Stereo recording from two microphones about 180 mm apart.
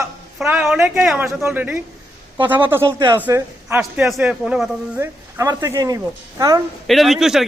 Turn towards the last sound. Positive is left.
turn(degrees=0)  # may be behind; listen again after turning